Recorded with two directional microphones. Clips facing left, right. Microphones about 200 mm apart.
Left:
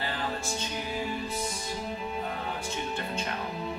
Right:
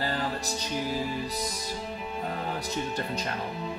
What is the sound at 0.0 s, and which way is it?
Music, 40° right (ahead or behind).